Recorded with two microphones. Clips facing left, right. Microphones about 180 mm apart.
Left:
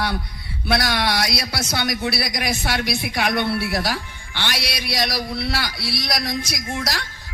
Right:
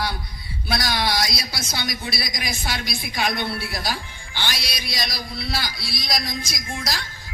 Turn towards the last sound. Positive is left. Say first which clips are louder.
# left 3 dB
turn(degrees=65)  # may be behind; listen again after turning